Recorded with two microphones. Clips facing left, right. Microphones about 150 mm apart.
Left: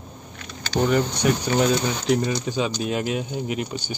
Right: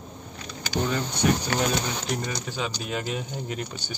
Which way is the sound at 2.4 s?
15° left (ahead or behind).